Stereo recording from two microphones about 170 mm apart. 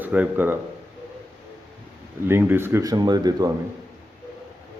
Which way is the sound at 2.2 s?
15° right (ahead or behind).